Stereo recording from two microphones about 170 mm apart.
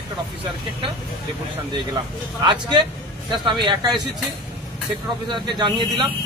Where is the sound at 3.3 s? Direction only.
25° right (ahead or behind).